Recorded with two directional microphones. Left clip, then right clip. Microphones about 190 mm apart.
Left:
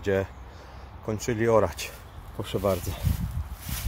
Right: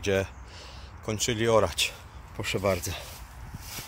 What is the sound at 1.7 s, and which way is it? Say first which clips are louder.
Speech: right 7 dB; 15° left (ahead or behind).